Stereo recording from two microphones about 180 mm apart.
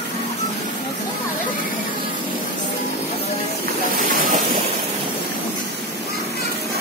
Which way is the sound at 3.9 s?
50° right (ahead or behind).